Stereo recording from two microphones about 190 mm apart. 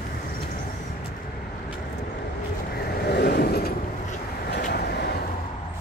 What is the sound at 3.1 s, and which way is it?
Vehicle, 55° left (ahead or behind).